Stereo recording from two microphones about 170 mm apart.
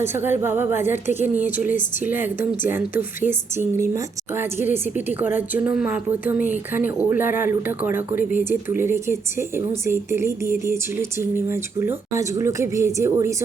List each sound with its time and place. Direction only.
0.1 s a woman's voice: 15° right (ahead or behind)
2.0 s a woman's voice: 10° right (ahead or behind)